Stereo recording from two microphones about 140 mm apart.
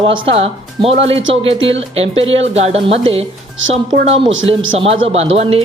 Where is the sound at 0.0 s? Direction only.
40° right (ahead or behind).